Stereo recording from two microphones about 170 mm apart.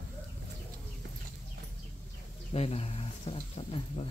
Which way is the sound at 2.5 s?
35° left (ahead or behind).